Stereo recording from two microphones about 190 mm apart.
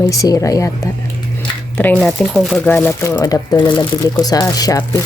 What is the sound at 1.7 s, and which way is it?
Speech, 10° left (ahead or behind).